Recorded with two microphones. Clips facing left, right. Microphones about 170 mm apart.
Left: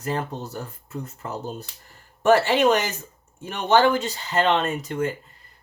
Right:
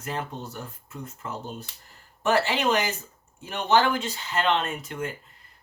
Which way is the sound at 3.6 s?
40° left (ahead or behind).